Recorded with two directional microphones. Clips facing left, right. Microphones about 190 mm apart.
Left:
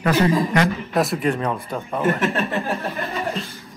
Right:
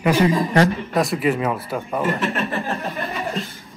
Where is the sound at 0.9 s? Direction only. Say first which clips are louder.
Right 1 dB; centre (ahead or behind).